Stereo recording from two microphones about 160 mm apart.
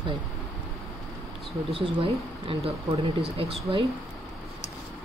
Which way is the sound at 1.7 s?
35° right (ahead or behind).